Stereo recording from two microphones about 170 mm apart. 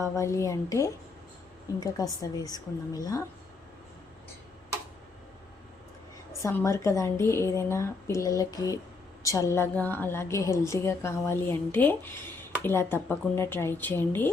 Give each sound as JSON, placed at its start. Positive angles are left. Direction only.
{"t": 0.2, "sound": "a woman's voice", "side_deg": 15}
{"t": 6.4, "sound": "a woman's voice", "side_deg": 15}